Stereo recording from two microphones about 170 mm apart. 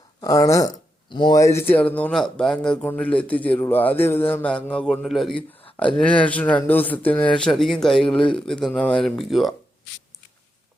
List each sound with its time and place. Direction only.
0.2 s speech: 20° left (ahead or behind); by 9.6 s centre (ahead or behind)